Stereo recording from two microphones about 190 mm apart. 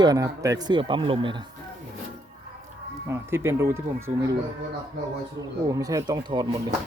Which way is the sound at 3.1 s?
15° right (ahead or behind).